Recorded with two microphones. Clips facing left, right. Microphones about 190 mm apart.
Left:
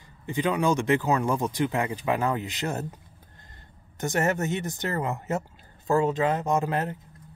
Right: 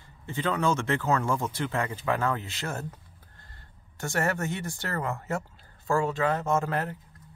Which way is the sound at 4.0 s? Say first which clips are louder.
Left 3 dB; 20° left (ahead or behind).